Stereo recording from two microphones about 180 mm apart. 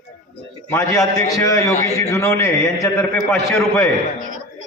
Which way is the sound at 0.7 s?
20° left (ahead or behind).